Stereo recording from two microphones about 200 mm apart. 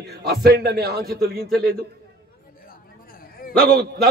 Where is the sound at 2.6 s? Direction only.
45° left (ahead or behind).